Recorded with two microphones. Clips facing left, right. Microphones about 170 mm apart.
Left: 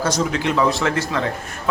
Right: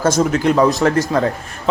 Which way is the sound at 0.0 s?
45° right (ahead or behind).